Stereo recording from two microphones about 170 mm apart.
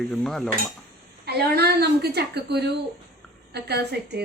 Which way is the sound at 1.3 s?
70° right (ahead or behind).